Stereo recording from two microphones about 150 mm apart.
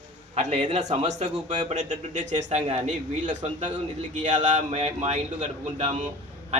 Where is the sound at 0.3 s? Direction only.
45° right (ahead or behind).